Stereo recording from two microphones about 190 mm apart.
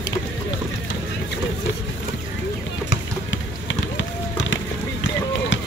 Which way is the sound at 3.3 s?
80° left.